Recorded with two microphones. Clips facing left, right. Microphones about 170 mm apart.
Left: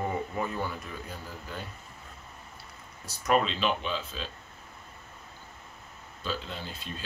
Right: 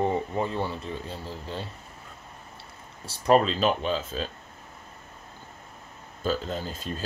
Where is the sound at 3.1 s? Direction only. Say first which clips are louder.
Right 5 dB; 35° right (ahead or behind).